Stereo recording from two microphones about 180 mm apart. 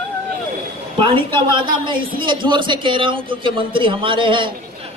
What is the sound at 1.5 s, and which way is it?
Speech, 25° right (ahead or behind).